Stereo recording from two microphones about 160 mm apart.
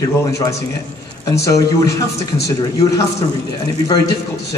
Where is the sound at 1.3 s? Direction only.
20° left (ahead or behind).